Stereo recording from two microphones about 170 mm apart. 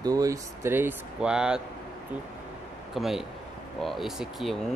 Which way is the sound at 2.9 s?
Centre (ahead or behind).